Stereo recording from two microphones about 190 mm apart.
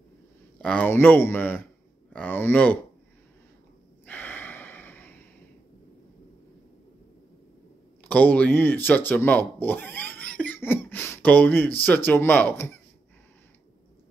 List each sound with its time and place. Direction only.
0.6 s speech: 5° left (ahead or behind)
4.0 s gasp: 10° left (ahead or behind)
8.0 s speech: 10° left (ahead or behind)